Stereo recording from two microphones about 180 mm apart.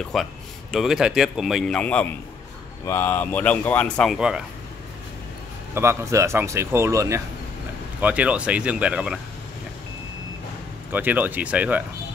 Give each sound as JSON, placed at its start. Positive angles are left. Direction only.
{"t": 0.1, "sound": "speech", "side_deg": 0}
{"t": 5.8, "sound": "a man's voice", "side_deg": -15}
{"t": 10.9, "sound": "a man's voice", "side_deg": -10}